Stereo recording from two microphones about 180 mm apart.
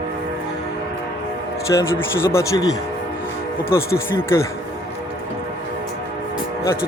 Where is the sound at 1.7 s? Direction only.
15° left (ahead or behind).